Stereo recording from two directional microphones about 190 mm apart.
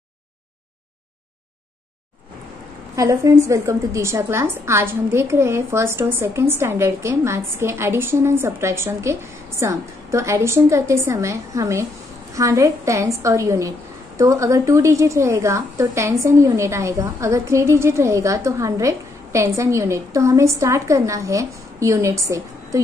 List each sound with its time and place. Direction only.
3.0 s a woman's voice: 15° right (ahead or behind)